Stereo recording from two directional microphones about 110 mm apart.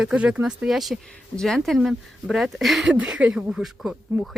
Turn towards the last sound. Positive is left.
turn(degrees=-5)  # may be behind; listen again after turning